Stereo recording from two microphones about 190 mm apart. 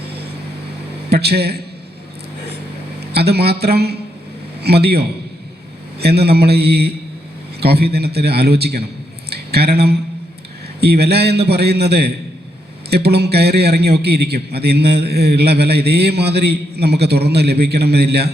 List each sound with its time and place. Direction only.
0.1 s vehicle: 60° right (ahead or behind)
1.1 s a man's voice: 60° right (ahead or behind)
3.1 s a man's voice: 60° right (ahead or behind)